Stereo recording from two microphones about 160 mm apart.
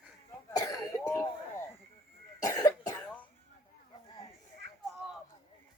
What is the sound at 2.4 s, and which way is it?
Cough, 25° left (ahead or behind).